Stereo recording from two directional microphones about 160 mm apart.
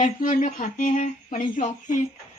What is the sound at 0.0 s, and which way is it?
Speech, 55° left (ahead or behind).